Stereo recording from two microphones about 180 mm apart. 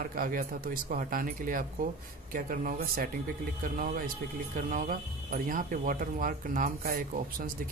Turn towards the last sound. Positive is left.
turn(degrees=-55)  # may be behind; listen again after turning